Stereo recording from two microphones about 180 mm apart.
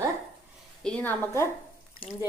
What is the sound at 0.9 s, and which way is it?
Speech, 15° left (ahead or behind).